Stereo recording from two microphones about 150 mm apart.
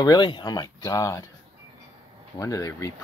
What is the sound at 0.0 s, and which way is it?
Speech, 30° left (ahead or behind).